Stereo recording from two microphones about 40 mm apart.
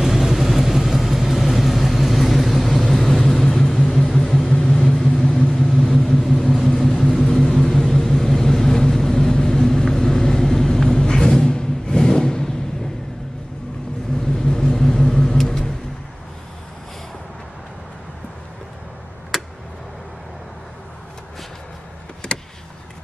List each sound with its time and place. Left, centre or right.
0.0 s vehicle: centre
14.3 s vehicle: centre
19.3 s tick: centre
22.2 s vehicle: left